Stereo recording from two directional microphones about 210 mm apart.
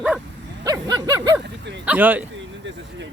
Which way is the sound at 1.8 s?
5° right (ahead or behind).